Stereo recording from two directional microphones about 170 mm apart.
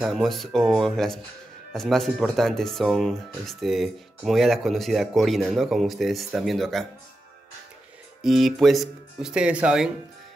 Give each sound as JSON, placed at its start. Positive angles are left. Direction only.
{"t": 0.0, "sound": "speech", "side_deg": 0}
{"t": 8.2, "sound": "speech", "side_deg": 0}